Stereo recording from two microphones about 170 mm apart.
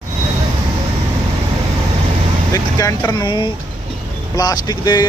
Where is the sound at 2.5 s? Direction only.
20° left (ahead or behind).